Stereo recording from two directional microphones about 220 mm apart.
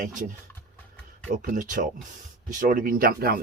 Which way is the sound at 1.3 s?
35° right (ahead or behind).